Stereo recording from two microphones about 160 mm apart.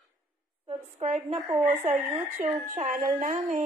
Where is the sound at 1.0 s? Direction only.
45° right (ahead or behind).